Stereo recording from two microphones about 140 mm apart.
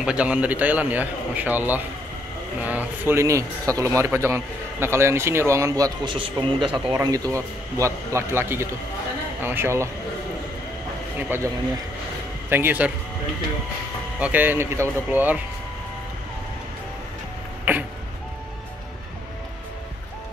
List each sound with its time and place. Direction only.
0.0 s speech: 10° right (ahead or behind); by 5.9 s 25° right (ahead or behind)
6.0 s speech: 40° right (ahead or behind)
7.0 s speech: 25° right (ahead or behind)
11.1 s speech: 15° right (ahead or behind)
14.2 s speech: 10° right (ahead or behind)
17.7 s music: 15° right (ahead or behind)